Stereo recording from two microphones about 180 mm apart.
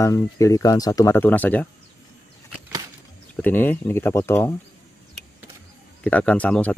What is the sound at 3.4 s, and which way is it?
Speech, 10° left (ahead or behind).